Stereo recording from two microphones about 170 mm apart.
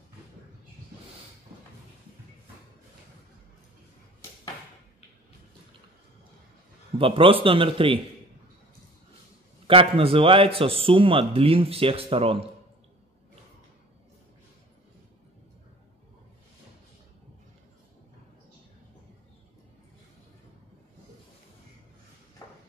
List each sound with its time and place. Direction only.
7.0 s a man's voice: 30° right (ahead or behind)
9.7 s a man's voice: 35° right (ahead or behind)